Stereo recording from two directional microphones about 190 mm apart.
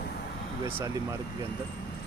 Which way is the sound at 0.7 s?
15° right (ahead or behind).